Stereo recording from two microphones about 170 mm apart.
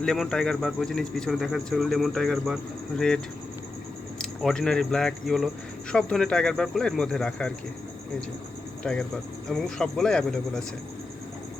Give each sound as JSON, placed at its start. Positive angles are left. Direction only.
{"t": 0.0, "sound": "speech", "side_deg": 0}
{"t": 4.2, "sound": "speech", "side_deg": 5}
{"t": 8.8, "sound": "speech", "side_deg": 5}